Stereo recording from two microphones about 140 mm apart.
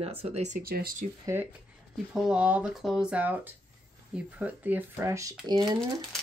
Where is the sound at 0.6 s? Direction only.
90° right.